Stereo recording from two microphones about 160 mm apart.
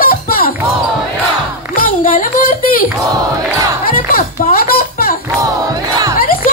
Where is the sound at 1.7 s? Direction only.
60° left (ahead or behind).